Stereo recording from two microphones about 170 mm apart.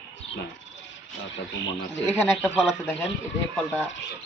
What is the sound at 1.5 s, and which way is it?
Speech, 90° left.